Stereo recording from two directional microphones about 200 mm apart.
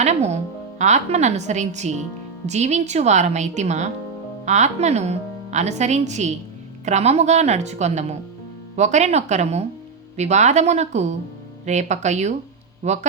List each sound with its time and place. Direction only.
0.0 s speech: 35° right (ahead or behind)